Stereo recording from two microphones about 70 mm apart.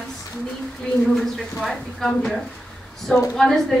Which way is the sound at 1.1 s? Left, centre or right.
Centre.